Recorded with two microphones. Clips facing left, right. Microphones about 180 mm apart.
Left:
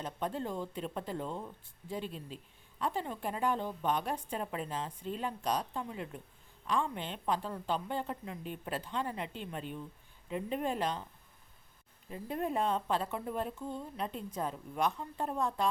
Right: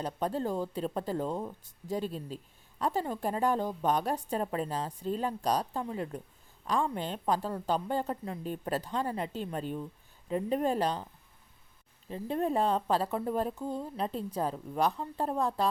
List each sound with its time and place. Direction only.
0.0 s speech: 35° right (ahead or behind)
12.0 s speech: 30° right (ahead or behind)